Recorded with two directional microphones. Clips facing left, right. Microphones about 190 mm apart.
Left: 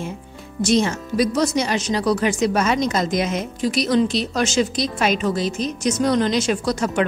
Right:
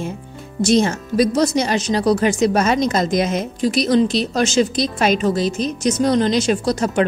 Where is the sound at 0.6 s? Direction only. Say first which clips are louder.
Right 3 dB; 40° right (ahead or behind).